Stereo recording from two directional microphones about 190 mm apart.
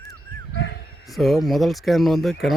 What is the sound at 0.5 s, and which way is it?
Bow-wow, 70° left (ahead or behind).